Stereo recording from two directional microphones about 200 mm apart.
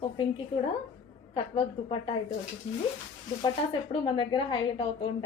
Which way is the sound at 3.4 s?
25° left (ahead or behind).